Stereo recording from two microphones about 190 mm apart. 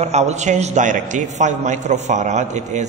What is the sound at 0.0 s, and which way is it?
A man's voice, 35° right (ahead or behind).